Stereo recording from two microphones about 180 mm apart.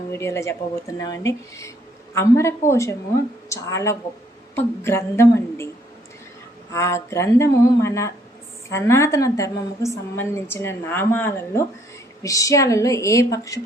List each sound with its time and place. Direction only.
0.1 s a woman's voice: 15° left (ahead or behind)
6.7 s a woman's voice: 15° left (ahead or behind)